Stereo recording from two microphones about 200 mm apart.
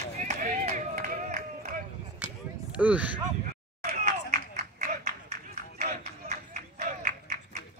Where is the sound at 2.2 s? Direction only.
5° right (ahead or behind).